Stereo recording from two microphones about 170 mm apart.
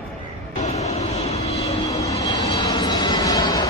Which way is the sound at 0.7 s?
40° left (ahead or behind).